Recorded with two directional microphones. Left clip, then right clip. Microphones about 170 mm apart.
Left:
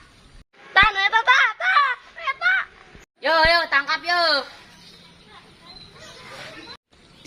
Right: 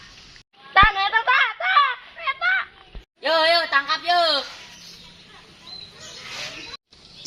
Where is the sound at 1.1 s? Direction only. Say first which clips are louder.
Left 2 dB; 5° left (ahead or behind).